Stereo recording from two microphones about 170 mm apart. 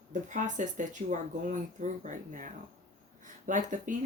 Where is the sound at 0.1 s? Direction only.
45° right (ahead or behind).